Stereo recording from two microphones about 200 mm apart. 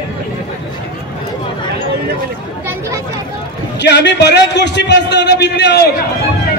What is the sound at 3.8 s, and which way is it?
A man's voice, 60° left (ahead or behind).